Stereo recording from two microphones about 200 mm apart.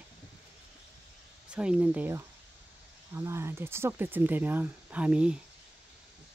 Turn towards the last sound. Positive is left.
turn(degrees=-5)  # may be behind; listen again after turning